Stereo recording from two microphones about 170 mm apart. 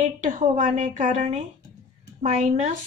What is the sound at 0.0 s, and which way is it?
A woman's voice, 50° right (ahead or behind).